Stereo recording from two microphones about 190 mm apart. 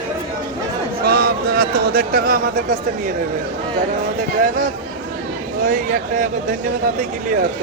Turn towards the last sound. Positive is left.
turn(degrees=-50)  # may be behind; listen again after turning